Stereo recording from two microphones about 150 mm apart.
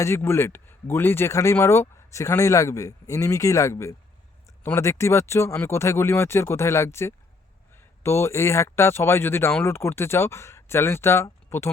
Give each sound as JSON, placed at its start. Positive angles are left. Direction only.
{"t": 0.0, "sound": "speech", "side_deg": 15}